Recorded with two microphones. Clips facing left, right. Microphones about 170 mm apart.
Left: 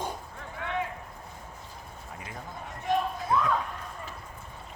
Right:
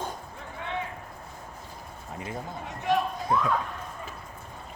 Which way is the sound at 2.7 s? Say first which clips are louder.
Right 2 dB; 75° right (ahead or behind).